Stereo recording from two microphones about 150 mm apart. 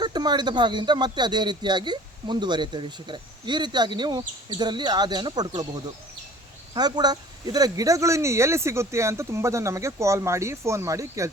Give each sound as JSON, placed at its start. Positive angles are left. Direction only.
{"t": 0.0, "sound": "speech", "side_deg": -30}